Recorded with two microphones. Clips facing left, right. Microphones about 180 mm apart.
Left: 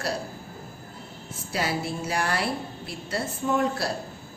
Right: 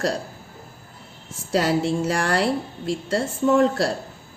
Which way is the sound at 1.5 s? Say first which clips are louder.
Right 8 dB; 80° right.